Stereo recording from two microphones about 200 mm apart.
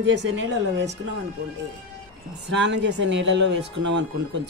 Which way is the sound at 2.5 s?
60° right (ahead or behind).